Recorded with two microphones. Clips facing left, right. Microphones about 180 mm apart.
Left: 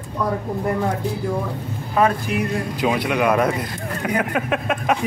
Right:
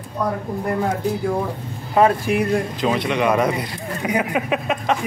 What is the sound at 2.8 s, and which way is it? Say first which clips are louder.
Speech: left 2 dB; 5° left (ahead or behind).